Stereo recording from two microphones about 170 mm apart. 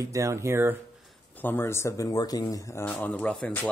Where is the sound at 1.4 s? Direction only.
15° left (ahead or behind).